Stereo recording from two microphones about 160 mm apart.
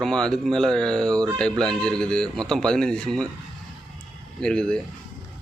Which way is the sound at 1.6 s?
5° left (ahead or behind).